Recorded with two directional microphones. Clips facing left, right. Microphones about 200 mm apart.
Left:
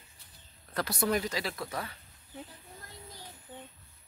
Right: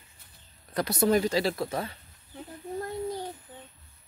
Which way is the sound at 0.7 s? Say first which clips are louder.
Right 6 dB; 20° right (ahead or behind).